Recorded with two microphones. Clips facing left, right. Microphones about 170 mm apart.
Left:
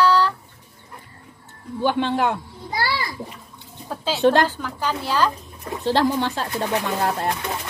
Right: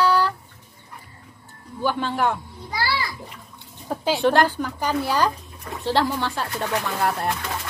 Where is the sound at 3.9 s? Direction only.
15° right (ahead or behind).